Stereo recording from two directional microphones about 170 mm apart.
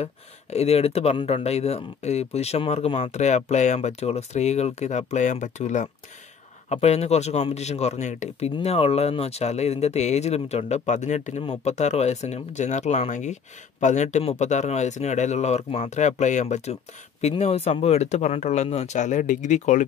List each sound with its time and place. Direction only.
0.0 s a man's voice: 40° left (ahead or behind)